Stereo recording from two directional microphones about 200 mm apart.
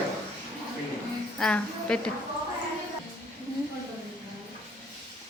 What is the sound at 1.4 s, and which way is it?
Speech, 5° left (ahead or behind).